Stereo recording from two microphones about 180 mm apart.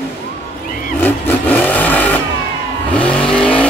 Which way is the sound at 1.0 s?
10° left (ahead or behind).